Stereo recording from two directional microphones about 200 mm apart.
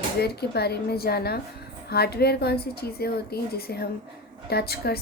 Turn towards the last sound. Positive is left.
turn(degrees=50)  # may be behind; listen again after turning